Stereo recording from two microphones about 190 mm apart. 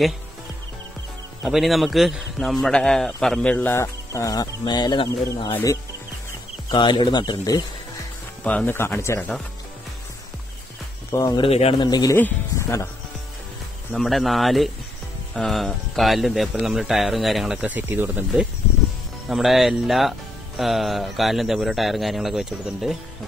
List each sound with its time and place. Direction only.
1.4 s a man's voice: centre (ahead or behind); by 7.6 s 20° left (ahead or behind)
8.5 s a man's voice: 10° left (ahead or behind)
11.1 s speech: 20° left (ahead or behind)
11.9 s speech: 20° left (ahead or behind)
13.9 s speech: centre (ahead or behind)